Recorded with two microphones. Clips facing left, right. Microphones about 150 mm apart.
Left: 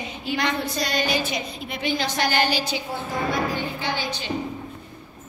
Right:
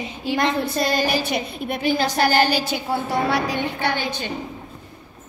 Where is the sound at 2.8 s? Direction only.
70° right (ahead or behind); by 4.3 s 50° right (ahead or behind).